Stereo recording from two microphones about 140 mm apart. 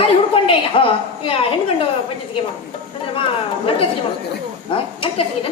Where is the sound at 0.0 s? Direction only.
40° left (ahead or behind).